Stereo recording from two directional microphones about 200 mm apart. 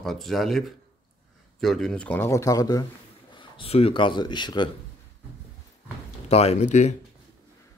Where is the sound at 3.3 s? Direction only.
30° left (ahead or behind).